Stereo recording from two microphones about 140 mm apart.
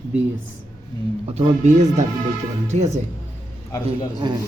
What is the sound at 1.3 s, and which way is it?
Speech, 50° right (ahead or behind).